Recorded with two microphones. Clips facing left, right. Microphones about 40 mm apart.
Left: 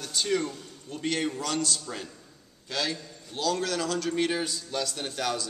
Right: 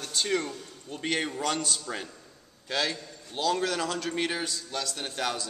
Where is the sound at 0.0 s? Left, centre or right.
Centre.